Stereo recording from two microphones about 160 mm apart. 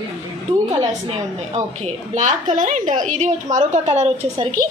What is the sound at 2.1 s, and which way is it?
A woman's voice, 50° right (ahead or behind).